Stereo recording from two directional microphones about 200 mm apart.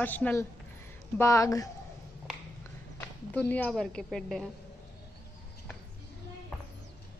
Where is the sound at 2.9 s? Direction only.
10° left (ahead or behind).